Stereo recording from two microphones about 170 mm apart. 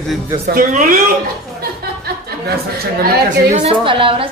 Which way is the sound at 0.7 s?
50° right (ahead or behind).